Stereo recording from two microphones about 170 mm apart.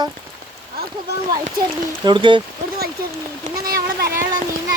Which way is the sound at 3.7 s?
60° right (ahead or behind).